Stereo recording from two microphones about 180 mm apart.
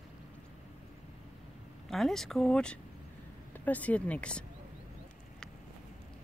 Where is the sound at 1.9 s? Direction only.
Centre (ahead or behind).